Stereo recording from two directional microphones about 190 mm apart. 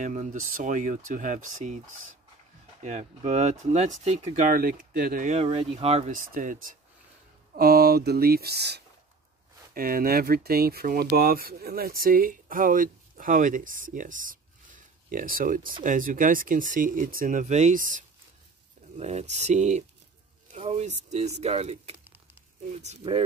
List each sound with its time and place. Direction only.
0.0 s speech: 40° right (ahead or behind)
2.8 s speech: 35° right (ahead or behind)
22.0 s a sound: 10° right (ahead or behind)
22.8 s speech: 35° right (ahead or behind)